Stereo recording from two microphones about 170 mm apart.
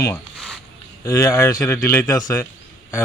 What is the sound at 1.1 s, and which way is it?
Speech, 15° left (ahead or behind).